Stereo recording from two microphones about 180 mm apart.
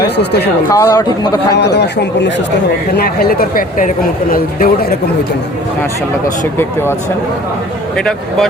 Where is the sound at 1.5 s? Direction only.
70° left (ahead or behind).